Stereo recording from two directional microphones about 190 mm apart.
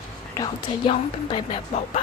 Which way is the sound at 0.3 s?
25° left (ahead or behind).